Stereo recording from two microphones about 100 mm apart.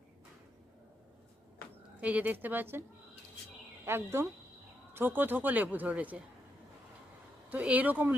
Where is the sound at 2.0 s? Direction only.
15° right (ahead or behind).